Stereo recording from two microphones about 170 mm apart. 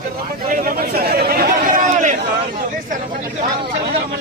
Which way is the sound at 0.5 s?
55° right (ahead or behind).